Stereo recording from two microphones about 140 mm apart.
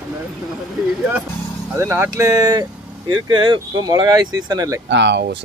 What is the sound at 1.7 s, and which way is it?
Speech, 15° right (ahead or behind).